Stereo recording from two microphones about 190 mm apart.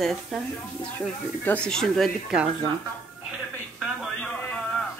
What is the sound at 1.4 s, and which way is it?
Speech, 5° left (ahead or behind).